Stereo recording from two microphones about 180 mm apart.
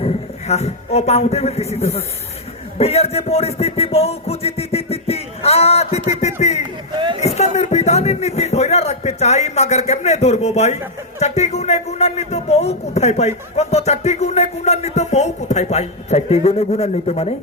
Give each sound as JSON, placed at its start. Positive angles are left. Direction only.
{"t": 0.0, "sound": "a man's voice", "side_deg": 35}
{"t": 6.9, "sound": "speech", "side_deg": -25}
{"t": 7.2, "sound": "a man's voice", "side_deg": 40}